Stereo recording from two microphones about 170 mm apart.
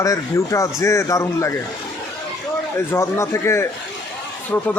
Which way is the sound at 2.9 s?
15° left (ahead or behind).